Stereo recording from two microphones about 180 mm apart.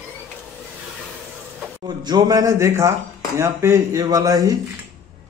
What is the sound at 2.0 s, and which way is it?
Speech, 20° right (ahead or behind).